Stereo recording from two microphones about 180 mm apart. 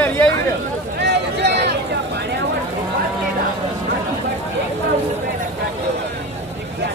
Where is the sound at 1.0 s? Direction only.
70° right (ahead or behind).